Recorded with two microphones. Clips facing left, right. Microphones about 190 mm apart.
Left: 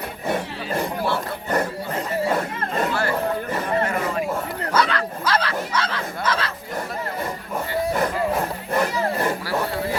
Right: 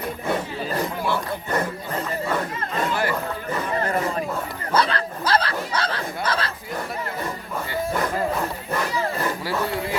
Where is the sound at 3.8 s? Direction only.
35° right (ahead or behind).